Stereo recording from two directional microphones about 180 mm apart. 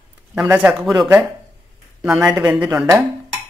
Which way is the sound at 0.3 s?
10° right (ahead or behind).